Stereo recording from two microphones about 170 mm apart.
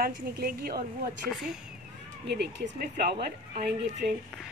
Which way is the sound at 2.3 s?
90° right.